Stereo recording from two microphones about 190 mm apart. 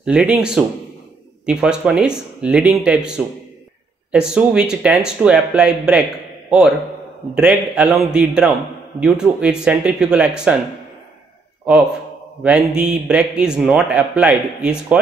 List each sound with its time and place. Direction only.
0.0 s a man's voice: 5° right (ahead or behind)
4.1 s a man's voice: 5° right (ahead or behind)
7.3 s a man's voice: 5° right (ahead or behind)
12.4 s a man's voice: 5° right (ahead or behind)